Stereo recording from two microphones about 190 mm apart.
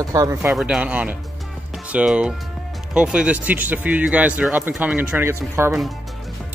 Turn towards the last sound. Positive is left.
turn(degrees=-15)  # may be behind; listen again after turning